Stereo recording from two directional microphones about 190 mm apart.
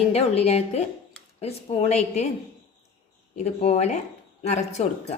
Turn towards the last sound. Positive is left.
turn(degrees=35)  # may be behind; listen again after turning